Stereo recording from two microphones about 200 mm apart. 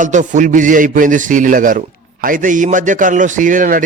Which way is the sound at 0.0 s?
40° right (ahead or behind).